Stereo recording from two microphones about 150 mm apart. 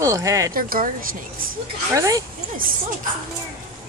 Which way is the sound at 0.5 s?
70° right (ahead or behind).